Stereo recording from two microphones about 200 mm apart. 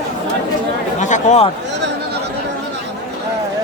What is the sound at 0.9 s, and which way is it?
Chatter, 35° left (ahead or behind).